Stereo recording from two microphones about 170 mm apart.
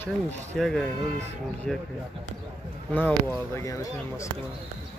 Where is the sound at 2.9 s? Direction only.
10° left (ahead or behind).